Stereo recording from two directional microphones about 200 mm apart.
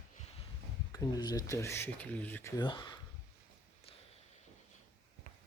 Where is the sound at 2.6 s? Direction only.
20° left (ahead or behind).